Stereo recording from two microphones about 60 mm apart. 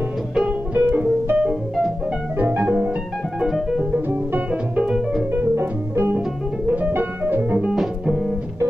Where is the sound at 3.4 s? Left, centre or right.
Centre.